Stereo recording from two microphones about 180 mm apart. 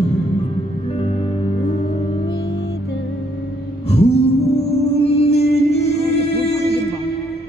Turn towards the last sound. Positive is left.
turn(degrees=35)  # may be behind; listen again after turning